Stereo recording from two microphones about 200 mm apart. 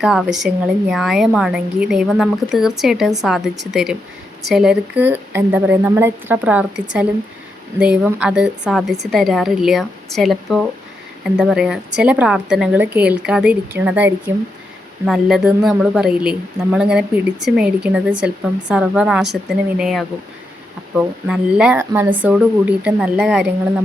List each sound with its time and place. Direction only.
0.0 s a woman's voice: centre (ahead or behind)